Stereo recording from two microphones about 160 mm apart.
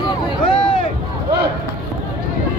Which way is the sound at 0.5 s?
30° left (ahead or behind).